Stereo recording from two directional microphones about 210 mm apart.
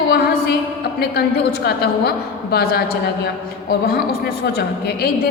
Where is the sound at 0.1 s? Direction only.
50° left (ahead or behind).